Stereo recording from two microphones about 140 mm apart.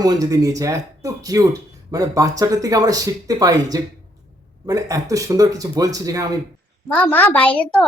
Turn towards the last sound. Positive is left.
turn(degrees=5)  # may be behind; listen again after turning